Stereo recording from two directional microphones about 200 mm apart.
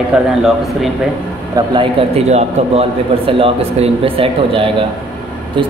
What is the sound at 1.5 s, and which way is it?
A man's voice, 25° right (ahead or behind).